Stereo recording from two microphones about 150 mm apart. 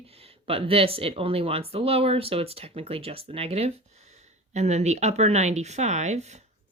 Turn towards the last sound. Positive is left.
turn(degrees=-50)  # may be behind; listen again after turning